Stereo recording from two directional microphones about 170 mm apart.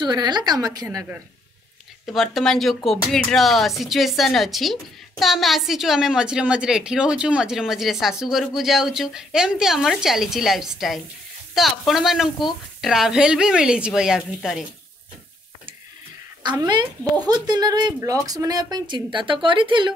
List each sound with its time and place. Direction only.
0.0 s speech: 25° right (ahead or behind)
2.1 s a woman's voice: centre (ahead or behind)
17.3 s speech: 25° right (ahead or behind)